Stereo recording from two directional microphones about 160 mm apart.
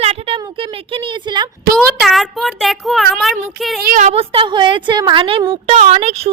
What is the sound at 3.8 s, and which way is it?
Speech, 55° right (ahead or behind).